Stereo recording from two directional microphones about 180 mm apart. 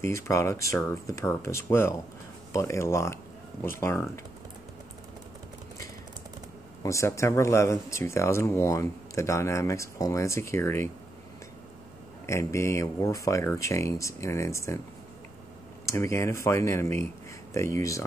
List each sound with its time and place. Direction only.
0.0 s speech: 15° left (ahead or behind)
6.8 s speech: 15° left (ahead or behind)
12.3 s speech: 15° left (ahead or behind)
15.8 s speech: 15° left (ahead or behind)